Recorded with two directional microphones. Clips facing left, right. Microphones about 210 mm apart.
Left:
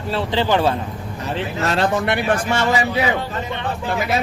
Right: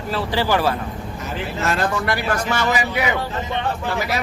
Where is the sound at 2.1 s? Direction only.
25° left (ahead or behind).